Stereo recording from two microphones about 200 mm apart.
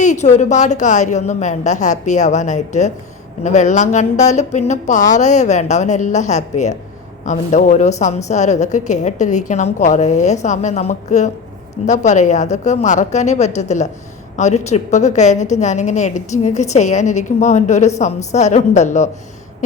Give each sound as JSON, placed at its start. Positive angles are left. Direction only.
{"t": 0.0, "sound": "a woman's voice", "side_deg": 35}